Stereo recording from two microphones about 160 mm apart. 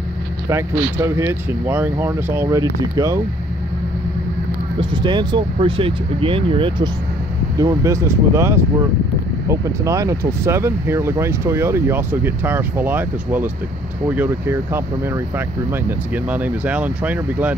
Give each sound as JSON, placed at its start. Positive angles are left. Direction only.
{"t": 0.5, "sound": "speech", "side_deg": -15}
{"t": 4.7, "sound": "speech", "side_deg": -30}
{"t": 7.5, "sound": "speech", "side_deg": -20}
{"t": 16.3, "sound": "speech", "side_deg": -10}